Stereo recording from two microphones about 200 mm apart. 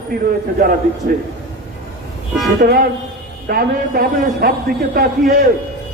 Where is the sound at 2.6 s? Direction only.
50° right (ahead or behind).